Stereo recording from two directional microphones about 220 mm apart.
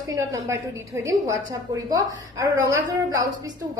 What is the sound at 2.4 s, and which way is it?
Speech, 15° right (ahead or behind).